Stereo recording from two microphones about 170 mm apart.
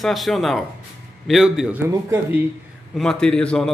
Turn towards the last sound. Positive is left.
turn(degrees=5)  # may be behind; listen again after turning